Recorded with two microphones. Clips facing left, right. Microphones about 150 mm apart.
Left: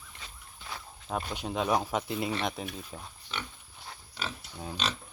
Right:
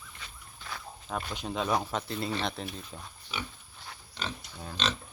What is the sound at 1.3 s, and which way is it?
Speech, 10° left (ahead or behind).